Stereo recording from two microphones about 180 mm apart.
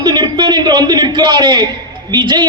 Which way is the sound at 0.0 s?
25° right (ahead or behind).